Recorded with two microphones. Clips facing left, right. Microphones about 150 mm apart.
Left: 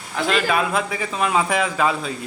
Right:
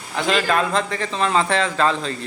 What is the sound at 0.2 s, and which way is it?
A man's voice, 5° left (ahead or behind).